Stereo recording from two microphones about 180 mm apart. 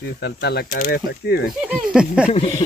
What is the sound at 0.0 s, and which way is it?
Speech, 65° left (ahead or behind).